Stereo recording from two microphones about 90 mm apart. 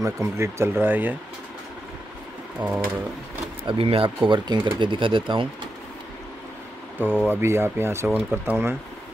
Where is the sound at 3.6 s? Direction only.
90° right; by 5.4 s 65° right (ahead or behind).